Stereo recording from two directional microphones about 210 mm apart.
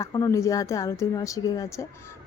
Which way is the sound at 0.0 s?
15° left (ahead or behind).